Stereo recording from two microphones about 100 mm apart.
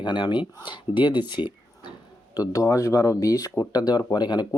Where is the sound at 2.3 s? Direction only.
35° left (ahead or behind).